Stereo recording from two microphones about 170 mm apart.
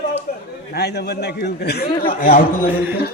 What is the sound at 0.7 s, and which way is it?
Speech, 75° left (ahead or behind).